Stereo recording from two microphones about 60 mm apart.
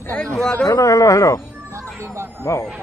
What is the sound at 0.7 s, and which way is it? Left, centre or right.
Speech, left.